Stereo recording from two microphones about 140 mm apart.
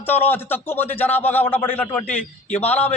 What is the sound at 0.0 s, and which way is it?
A man's voice, 15° left (ahead or behind).